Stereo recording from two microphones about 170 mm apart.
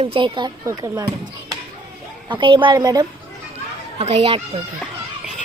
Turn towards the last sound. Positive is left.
turn(degrees=0)  # may be behind; listen again after turning